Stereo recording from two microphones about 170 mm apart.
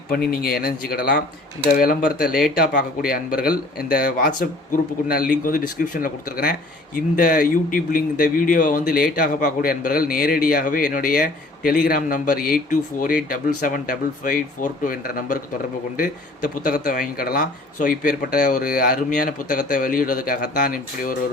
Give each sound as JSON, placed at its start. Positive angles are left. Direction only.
{"t": 0.1, "sound": "speech", "side_deg": 65}